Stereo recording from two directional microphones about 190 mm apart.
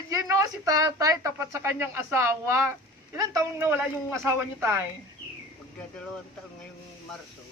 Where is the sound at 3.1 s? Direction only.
10° right (ahead or behind).